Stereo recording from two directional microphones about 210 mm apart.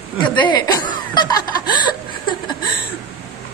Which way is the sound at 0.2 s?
20° left (ahead or behind).